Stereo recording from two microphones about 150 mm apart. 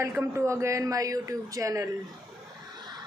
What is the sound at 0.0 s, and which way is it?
Speech, 20° right (ahead or behind).